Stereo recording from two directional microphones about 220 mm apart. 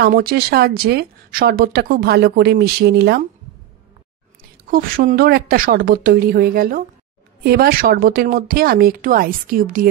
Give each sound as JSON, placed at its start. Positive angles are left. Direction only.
{"t": 0.0, "sound": "speech", "side_deg": -45}
{"t": 4.6, "sound": "a woman's voice", "side_deg": -40}